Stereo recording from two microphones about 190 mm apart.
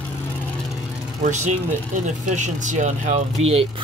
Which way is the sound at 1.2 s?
40° right (ahead or behind).